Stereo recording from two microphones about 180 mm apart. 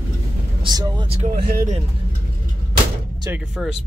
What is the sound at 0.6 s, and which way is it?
Vehicle, 25° right (ahead or behind).